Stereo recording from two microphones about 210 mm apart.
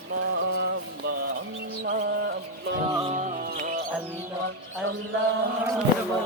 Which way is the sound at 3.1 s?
35° right (ahead or behind).